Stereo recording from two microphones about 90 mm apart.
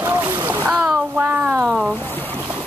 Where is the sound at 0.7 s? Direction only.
10° right (ahead or behind).